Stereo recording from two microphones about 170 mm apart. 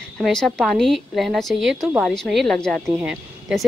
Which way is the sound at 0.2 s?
5° left (ahead or behind).